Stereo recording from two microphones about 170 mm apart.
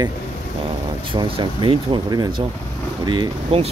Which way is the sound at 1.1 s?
30° right (ahead or behind).